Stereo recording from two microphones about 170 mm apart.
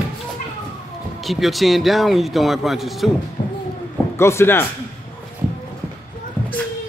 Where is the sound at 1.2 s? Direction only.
Centre (ahead or behind).